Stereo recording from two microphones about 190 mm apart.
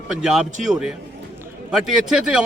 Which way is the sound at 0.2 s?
5° right (ahead or behind).